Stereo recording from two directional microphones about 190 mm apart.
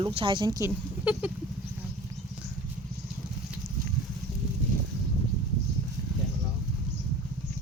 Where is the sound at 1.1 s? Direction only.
10° right (ahead or behind).